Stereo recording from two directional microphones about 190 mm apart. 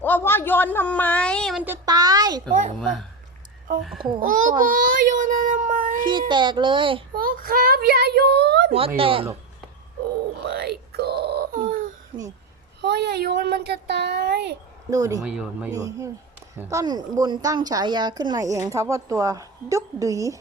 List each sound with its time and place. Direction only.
0.0 s a sound: 10° left (ahead or behind)
1.6 s a sound: 15° right (ahead or behind)
2.5 s a child's voice: 40° right (ahead or behind)
3.8 s speech: centre (ahead or behind)
4.2 s a child's voice: 45° right (ahead or behind)
6.1 s a child's voice: 25° right (ahead or behind)
7.2 s a child's voice: 50° right (ahead or behind)
9.0 s a child's voice: 30° right (ahead or behind)
10.4 s wail: 55° right (ahead or behind)
12.8 s a child's voice: 60° right (ahead or behind)
14.8 s a woman's voice: 15° right (ahead or behind)
15.2 s speech: 5° right (ahead or behind)
15.7 s a woman's voice: 15° right (ahead or behind)